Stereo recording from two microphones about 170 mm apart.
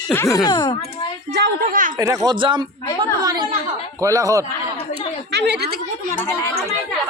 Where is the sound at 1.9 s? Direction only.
20° right (ahead or behind).